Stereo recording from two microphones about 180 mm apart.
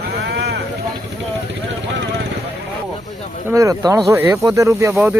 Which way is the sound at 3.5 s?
15° right (ahead or behind).